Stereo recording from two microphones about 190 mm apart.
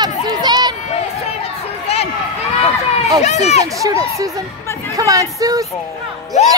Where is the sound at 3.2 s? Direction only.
35° left (ahead or behind).